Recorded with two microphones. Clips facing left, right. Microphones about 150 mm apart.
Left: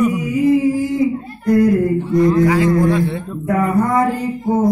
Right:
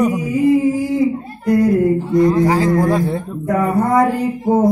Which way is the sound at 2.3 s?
35° right (ahead or behind).